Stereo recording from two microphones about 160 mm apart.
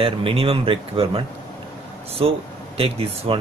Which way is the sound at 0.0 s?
35° right (ahead or behind).